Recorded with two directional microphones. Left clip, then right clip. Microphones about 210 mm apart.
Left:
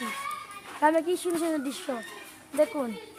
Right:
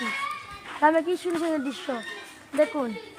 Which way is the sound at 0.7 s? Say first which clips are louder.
Right 2 dB; 10° right (ahead or behind).